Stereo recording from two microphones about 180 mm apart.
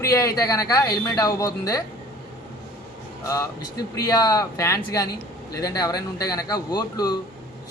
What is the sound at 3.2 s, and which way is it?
A man's voice, 20° left (ahead or behind).